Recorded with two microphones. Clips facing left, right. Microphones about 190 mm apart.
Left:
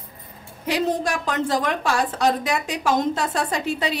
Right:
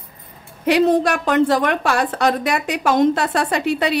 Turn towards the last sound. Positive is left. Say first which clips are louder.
# right 5 dB
turn(degrees=-65)  # may be behind; listen again after turning